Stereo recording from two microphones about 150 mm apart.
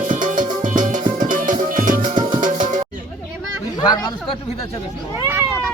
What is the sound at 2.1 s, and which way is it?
Music, 35° right (ahead or behind).